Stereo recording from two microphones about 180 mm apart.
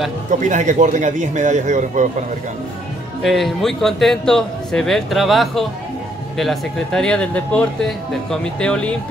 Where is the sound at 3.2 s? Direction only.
Centre (ahead or behind).